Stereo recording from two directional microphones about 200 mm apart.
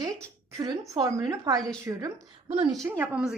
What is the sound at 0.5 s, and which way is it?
A woman's voice, 15° right (ahead or behind).